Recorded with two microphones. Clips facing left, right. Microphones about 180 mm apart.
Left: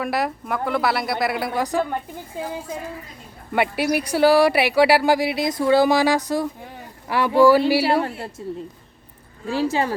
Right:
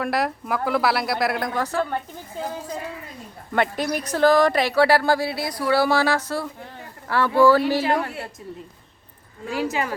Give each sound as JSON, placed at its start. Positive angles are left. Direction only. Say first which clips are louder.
{"t": 0.0, "sound": "speech", "louder": "even", "side_deg": 0}
{"t": 3.5, "sound": "speech", "louder": "left 2 dB", "side_deg": 10}
{"t": 8.4, "sound": "a woman's voice", "louder": "left 7 dB", "side_deg": 30}